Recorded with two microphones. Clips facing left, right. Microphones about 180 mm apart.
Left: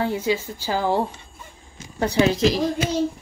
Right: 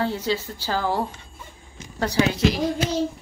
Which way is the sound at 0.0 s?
15° left (ahead or behind).